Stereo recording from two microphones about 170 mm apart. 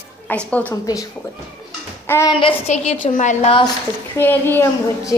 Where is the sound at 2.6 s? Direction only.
45° left (ahead or behind).